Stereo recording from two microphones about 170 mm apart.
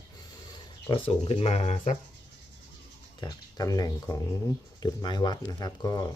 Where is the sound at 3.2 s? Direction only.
20° left (ahead or behind).